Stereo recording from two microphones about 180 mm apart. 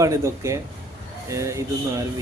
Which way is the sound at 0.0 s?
15° right (ahead or behind).